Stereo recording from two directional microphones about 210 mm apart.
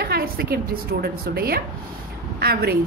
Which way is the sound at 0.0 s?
45° right (ahead or behind).